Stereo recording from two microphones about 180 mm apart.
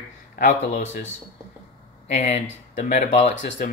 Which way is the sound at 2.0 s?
40° left (ahead or behind).